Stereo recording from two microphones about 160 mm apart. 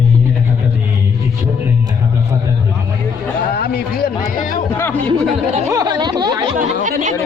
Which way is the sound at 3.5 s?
70° left (ahead or behind).